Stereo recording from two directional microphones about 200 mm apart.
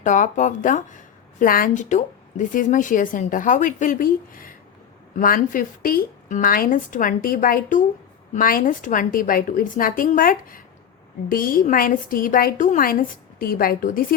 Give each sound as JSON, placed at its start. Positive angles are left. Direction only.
{"t": 0.0, "sound": "a woman's voice", "side_deg": 40}